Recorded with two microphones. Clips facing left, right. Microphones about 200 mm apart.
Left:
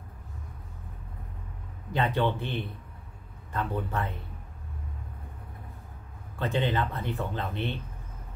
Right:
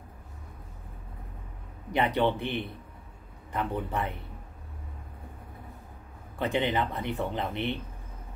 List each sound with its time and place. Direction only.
1.9 s speech: 15° right (ahead or behind)
6.3 s speech: 15° right (ahead or behind)